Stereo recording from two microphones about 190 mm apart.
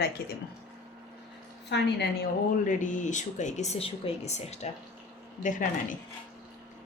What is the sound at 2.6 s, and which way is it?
Speech, 40° left (ahead or behind).